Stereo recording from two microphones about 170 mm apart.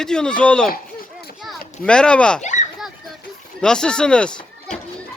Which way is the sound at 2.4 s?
45° left (ahead or behind).